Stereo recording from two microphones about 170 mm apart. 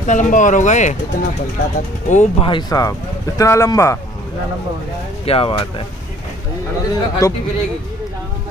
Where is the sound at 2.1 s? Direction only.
45° left (ahead or behind).